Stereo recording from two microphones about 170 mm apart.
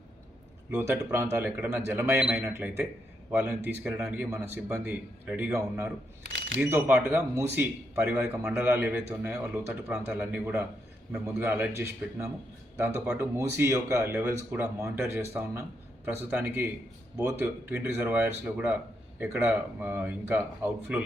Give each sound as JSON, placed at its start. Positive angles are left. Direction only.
{"t": 0.7, "sound": "speech", "side_deg": -15}